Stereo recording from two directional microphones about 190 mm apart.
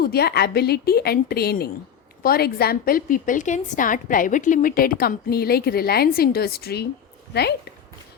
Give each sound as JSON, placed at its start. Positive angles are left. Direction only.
{"t": 0.0, "sound": "a woman's voice", "side_deg": 55}